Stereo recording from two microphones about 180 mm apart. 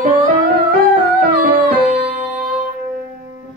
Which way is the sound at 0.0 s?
50° right (ahead or behind).